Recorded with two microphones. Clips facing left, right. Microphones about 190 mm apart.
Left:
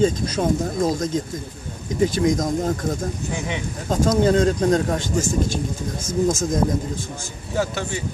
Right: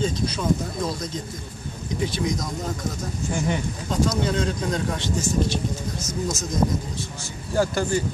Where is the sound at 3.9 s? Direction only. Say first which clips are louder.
Left 6 dB; 45° left (ahead or behind).